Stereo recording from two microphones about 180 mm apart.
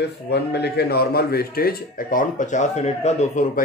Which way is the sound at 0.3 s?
65° left (ahead or behind).